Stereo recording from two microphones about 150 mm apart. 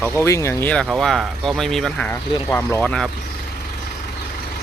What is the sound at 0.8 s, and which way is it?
Speech, centre (ahead or behind).